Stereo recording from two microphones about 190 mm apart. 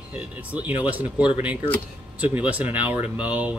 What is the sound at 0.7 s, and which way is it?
Speech, 10° right (ahead or behind).